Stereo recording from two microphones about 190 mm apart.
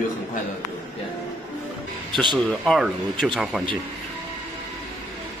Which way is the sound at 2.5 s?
Centre (ahead or behind).